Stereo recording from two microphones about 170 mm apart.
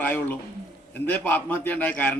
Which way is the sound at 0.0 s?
10° left (ahead or behind).